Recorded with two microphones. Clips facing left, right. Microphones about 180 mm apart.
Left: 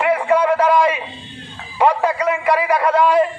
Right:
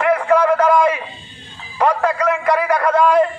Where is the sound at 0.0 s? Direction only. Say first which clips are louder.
Right 1 dB; 10° left (ahead or behind).